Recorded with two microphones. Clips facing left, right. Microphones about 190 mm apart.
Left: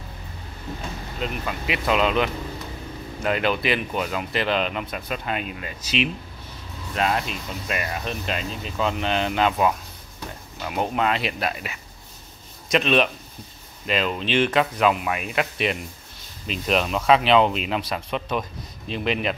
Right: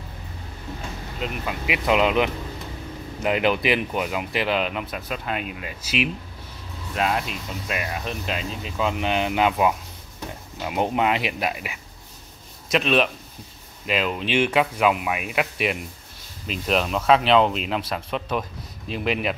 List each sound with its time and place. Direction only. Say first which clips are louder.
1.2 s speech: even; 10° right (ahead or behind)